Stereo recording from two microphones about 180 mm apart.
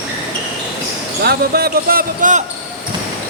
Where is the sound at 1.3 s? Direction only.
60° right (ahead or behind).